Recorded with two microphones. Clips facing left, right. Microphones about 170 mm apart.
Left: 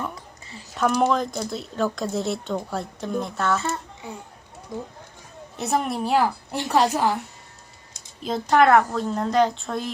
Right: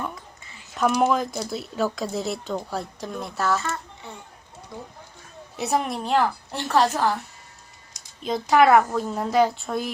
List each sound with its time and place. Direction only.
0.8 s speech: 5° right (ahead or behind)
4.7 s speech: 20° left (ahead or behind)
5.5 s a woman's voice: centre (ahead or behind)
8.2 s speech: centre (ahead or behind)